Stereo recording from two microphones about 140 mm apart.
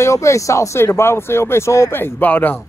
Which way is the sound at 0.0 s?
20° left (ahead or behind).